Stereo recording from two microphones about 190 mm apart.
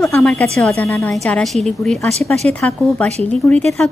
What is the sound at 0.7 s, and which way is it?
A woman's voice, 15° left (ahead or behind).